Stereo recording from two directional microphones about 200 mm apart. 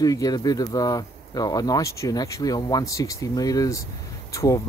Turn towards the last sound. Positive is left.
turn(degrees=15)  # may be behind; listen again after turning